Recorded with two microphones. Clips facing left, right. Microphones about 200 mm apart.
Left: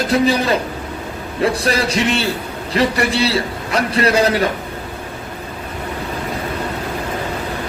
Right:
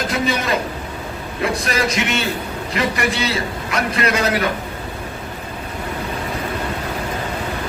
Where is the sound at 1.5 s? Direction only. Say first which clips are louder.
Left 3 dB; 35° left (ahead or behind).